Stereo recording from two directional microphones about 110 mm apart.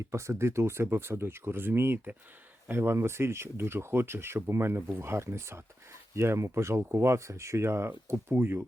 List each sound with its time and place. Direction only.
0.1 s speech: 25° right (ahead or behind)